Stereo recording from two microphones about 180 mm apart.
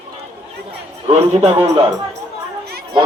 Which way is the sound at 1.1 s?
35° right (ahead or behind).